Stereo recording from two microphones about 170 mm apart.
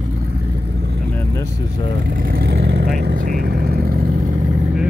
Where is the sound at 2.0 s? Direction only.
65° right (ahead or behind).